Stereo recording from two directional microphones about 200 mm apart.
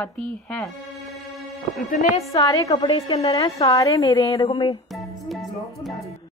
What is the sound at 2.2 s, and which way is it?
A woman's voice, 15° left (ahead or behind).